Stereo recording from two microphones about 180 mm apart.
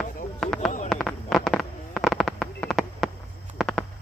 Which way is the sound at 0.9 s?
5° left (ahead or behind).